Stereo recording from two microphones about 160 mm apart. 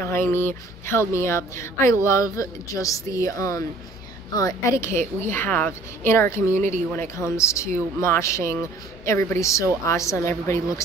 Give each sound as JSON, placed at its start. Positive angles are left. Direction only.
{"t": 0.0, "sound": "speech", "side_deg": 15}